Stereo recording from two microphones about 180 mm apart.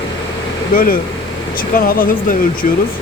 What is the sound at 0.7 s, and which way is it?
Speech, 50° left (ahead or behind).